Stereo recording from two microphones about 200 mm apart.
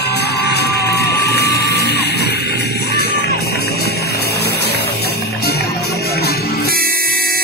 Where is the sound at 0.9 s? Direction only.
55° left (ahead or behind).